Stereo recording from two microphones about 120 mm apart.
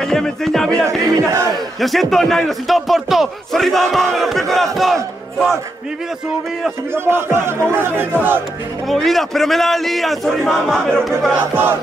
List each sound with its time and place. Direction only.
0.0 s a man's voice: 5° left (ahead or behind)
1.0 s speech: 30° right (ahead or behind)
1.8 s a man's voice: centre (ahead or behind)
4.7 s battle cry: centre (ahead or behind)
6.9 s speech: 20° right (ahead or behind)
8.8 s a man's voice: centre (ahead or behind)